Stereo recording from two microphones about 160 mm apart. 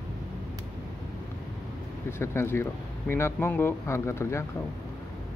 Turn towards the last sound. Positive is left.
turn(degrees=15)  # may be behind; listen again after turning